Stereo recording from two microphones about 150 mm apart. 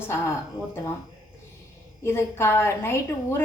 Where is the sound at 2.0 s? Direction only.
15° left (ahead or behind).